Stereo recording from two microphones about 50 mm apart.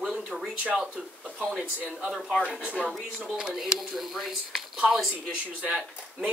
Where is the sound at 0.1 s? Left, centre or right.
Centre.